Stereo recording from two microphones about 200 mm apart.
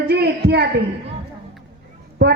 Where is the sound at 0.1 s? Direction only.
55° right (ahead or behind).